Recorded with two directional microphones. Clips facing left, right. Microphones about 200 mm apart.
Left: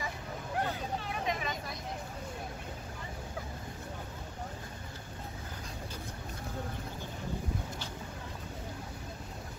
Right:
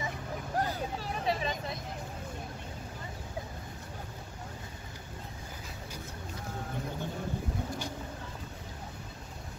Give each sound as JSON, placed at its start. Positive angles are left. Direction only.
{"t": 0.6, "sound": "vehicle", "side_deg": -35}